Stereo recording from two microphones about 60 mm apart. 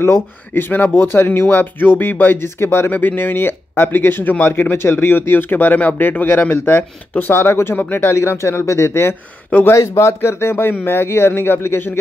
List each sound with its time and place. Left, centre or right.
0.0 s speech: left
2.9 s speech: left
7.7 s speech: left
8.1 s speech: left
9.5 s speech: left
9.8 s speech: left